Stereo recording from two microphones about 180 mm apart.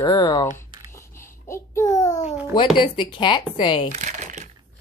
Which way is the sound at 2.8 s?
25° left (ahead or behind).